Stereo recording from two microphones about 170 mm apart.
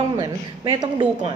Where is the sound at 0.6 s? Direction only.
30° right (ahead or behind).